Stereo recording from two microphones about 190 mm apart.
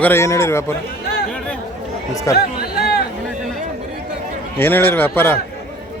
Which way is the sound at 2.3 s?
55° left (ahead or behind).